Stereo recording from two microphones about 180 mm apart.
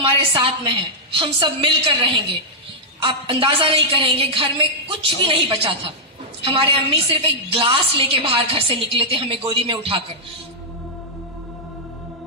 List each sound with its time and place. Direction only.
0.0 s a woman's voice: 30° right (ahead or behind)